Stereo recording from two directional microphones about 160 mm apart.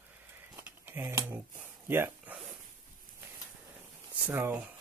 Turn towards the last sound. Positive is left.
turn(degrees=-15)  # may be behind; listen again after turning